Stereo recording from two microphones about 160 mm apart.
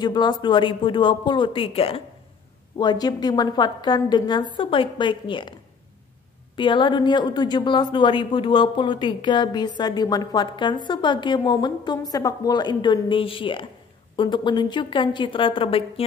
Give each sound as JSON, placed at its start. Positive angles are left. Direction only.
{"t": 0.0, "sound": "speech", "side_deg": 25}
{"t": 2.8, "sound": "speech", "side_deg": 25}
{"t": 6.5, "sound": "speech", "side_deg": 30}